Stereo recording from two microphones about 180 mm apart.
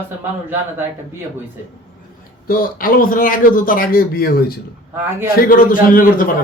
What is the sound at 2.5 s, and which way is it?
A man's voice, 55° left (ahead or behind).